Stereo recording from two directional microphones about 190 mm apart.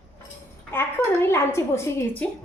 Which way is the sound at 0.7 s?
10° left (ahead or behind).